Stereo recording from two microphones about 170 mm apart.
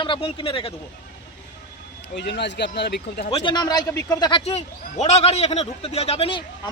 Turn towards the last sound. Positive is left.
turn(degrees=30)  # may be behind; listen again after turning